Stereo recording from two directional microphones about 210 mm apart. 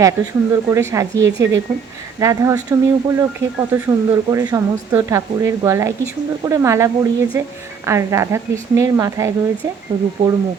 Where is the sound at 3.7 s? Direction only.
10° right (ahead or behind).